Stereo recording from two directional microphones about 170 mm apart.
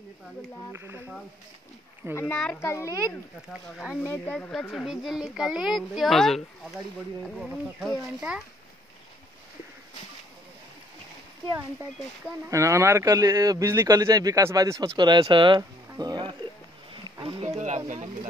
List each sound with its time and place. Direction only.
0.7 s speech: 15° right (ahead or behind)
2.4 s a child's voice: 15° left (ahead or behind)
3.7 s speech: 5° right (ahead or behind)
4.1 s speech: 10° left (ahead or behind)
12.4 s speech: 15° right (ahead or behind)
15.9 s music: 25° right (ahead or behind)
16.9 s a sound: 30° right (ahead or behind)
17.6 s speech: 45° right (ahead or behind)